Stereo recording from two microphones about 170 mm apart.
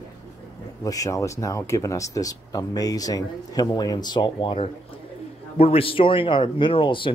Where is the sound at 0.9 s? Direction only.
20° left (ahead or behind).